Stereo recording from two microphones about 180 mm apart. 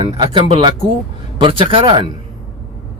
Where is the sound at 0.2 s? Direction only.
25° right (ahead or behind).